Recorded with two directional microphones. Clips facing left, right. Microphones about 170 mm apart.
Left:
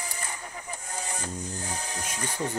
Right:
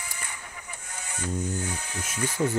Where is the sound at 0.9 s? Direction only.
35° left (ahead or behind).